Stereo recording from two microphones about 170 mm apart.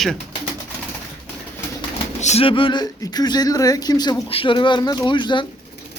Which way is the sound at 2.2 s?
40° left (ahead or behind).